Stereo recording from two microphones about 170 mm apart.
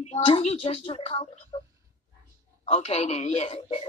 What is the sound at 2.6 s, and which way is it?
Speech, 40° left (ahead or behind).